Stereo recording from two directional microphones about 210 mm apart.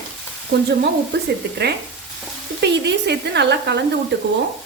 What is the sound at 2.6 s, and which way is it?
Speech, 55° right (ahead or behind).